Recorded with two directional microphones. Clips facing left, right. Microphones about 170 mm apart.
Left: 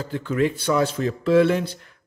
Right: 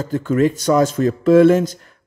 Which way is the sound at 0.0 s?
45° right (ahead or behind).